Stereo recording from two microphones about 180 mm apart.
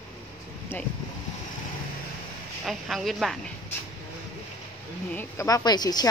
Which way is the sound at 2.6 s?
Centre (ahead or behind).